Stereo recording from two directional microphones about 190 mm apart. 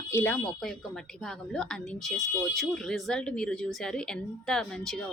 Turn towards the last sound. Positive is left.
turn(degrees=5)  # may be behind; listen again after turning